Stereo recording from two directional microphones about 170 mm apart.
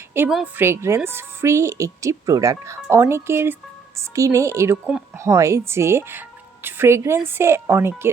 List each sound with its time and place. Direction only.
0.3 s a woman's voice: 5° right (ahead or behind)